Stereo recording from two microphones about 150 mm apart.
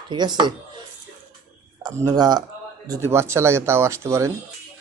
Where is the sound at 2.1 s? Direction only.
30° right (ahead or behind).